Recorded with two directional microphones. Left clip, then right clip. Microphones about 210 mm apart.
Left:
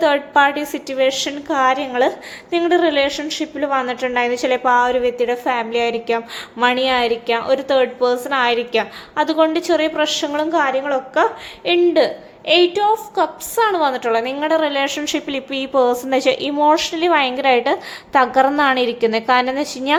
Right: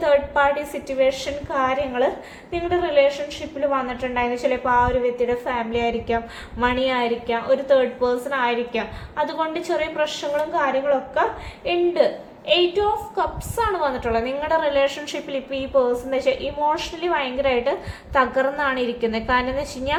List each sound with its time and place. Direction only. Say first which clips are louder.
0.0 s a woman's voice: left 4 dB; 45° left (ahead or behind)